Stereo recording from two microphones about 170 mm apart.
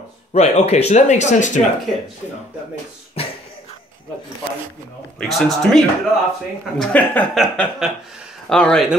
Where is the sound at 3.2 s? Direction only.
35° left (ahead or behind).